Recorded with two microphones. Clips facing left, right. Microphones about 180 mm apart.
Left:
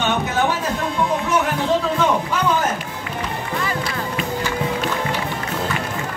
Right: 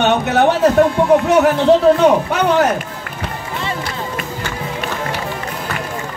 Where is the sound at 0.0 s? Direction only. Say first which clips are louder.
Right 7 dB; 70° right (ahead or behind).